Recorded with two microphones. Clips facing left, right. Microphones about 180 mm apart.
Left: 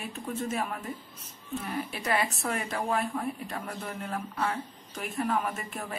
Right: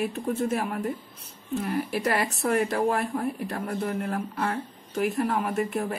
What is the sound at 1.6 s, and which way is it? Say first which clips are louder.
Speech: right 9 dB; 60° right (ahead or behind).